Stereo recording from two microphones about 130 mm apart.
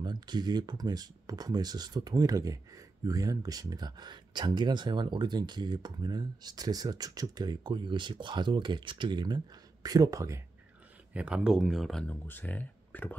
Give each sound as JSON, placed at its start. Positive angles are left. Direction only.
{"t": 0.0, "sound": "speech", "side_deg": -35}
{"t": 11.1, "sound": "speech", "side_deg": -5}